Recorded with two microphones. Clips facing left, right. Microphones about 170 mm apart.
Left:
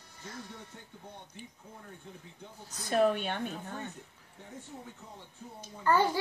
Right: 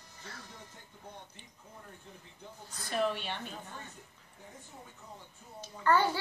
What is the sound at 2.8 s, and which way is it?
Speech, 45° left (ahead or behind).